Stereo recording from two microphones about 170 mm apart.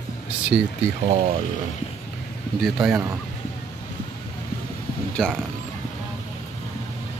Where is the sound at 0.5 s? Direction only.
5° right (ahead or behind).